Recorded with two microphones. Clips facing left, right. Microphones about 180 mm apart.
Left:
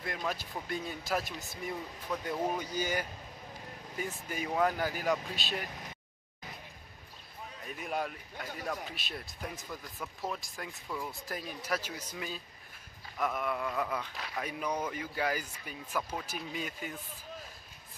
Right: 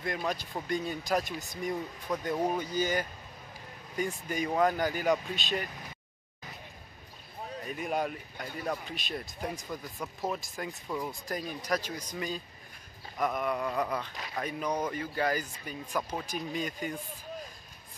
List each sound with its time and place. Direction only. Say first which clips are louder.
0.0 s a man's voice: right 3 dB; 5° left (ahead or behind)
2.1 s speech: right 3 dB; 15° right (ahead or behind)
2.6 s a man's voice: right 4 dB; 10° left (ahead or behind)
7.6 s a man's voice: right 4 dB; centre (ahead or behind)
9.7 s speech: right 4 dB; 15° right (ahead or behind)
10.5 s a man's voice: right 5 dB; centre (ahead or behind)
10.9 s speech: right 3 dB; 20° right (ahead or behind)
11.2 s a man's voice: right 3 dB; 5° left (ahead or behind)
16.0 s speech: right 2 dB; 10° right (ahead or behind)
16.3 s speech: right 5 dB; 5° left (ahead or behind)